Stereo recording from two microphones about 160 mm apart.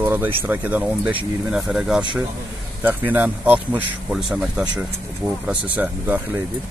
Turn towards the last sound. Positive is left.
turn(degrees=-10)  # may be behind; listen again after turning